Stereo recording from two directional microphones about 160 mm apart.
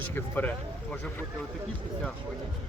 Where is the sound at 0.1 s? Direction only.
10° left (ahead or behind).